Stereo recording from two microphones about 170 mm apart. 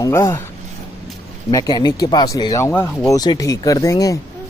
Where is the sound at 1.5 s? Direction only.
25° left (ahead or behind).